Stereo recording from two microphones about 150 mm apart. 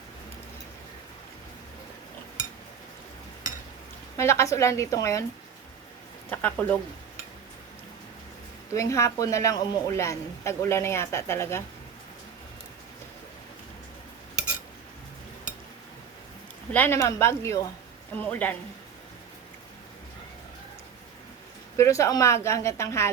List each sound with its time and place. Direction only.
4.2 s a woman's voice: 20° left (ahead or behind)
6.3 s speech: 10° left (ahead or behind)
8.7 s a woman's voice: 20° left (ahead or behind)
16.7 s speech: 15° left (ahead or behind)
21.8 s a woman's voice: 20° left (ahead or behind)